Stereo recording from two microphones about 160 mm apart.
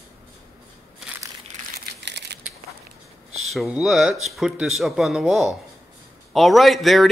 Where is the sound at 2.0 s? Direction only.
90° right.